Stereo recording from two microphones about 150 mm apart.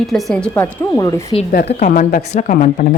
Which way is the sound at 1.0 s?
25° left (ahead or behind).